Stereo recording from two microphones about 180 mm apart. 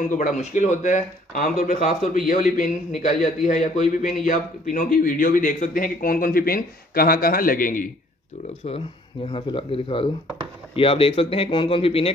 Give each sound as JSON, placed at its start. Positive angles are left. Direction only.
{"t": 0.0, "sound": "a man's voice", "side_deg": 45}
{"t": 9.3, "sound": "speech", "side_deg": 30}